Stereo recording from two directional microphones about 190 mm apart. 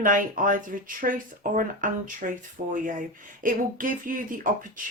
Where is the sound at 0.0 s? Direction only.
45° right (ahead or behind).